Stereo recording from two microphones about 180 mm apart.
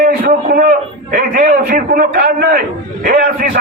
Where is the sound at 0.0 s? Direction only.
60° right (ahead or behind).